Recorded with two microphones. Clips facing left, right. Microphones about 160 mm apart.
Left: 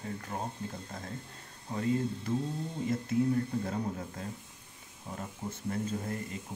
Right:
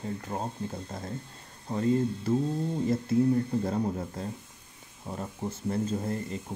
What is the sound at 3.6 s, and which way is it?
Speech, 35° right (ahead or behind).